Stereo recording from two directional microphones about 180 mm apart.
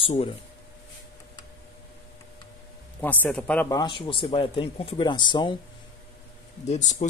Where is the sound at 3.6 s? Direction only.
20° left (ahead or behind).